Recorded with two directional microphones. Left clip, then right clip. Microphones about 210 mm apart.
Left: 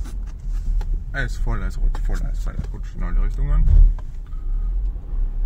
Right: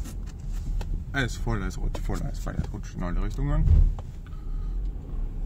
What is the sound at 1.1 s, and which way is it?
Speech, 5° right (ahead or behind).